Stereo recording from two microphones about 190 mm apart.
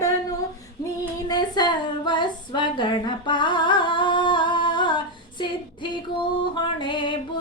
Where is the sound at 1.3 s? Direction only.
20° left (ahead or behind).